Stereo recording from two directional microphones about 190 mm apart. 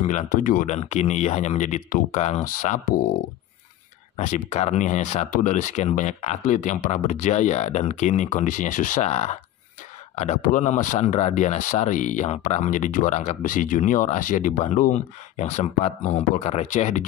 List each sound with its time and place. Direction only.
0.0 s speech: 40° left (ahead or behind)
4.2 s speech: 40° left (ahead or behind)